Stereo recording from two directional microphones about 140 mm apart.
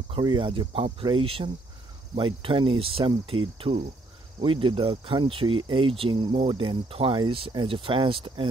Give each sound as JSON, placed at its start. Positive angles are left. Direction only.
{"t": 0.1, "sound": "speech", "side_deg": -35}